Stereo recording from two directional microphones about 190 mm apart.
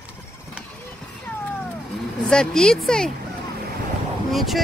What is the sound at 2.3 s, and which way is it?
Speech, 5° left (ahead or behind).